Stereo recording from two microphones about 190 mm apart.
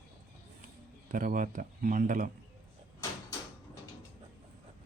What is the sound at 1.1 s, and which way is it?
Speech, 45° right (ahead or behind).